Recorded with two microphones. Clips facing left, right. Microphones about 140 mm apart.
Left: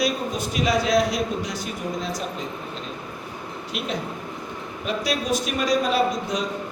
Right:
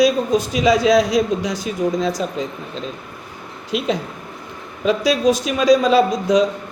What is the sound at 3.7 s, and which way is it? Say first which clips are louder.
Speech: right 9 dB; 90° right.